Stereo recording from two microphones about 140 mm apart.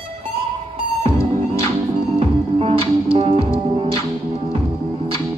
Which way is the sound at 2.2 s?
45° right (ahead or behind).